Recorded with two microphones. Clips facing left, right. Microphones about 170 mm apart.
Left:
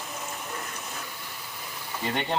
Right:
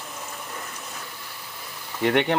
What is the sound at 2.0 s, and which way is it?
Speech, 70° right (ahead or behind).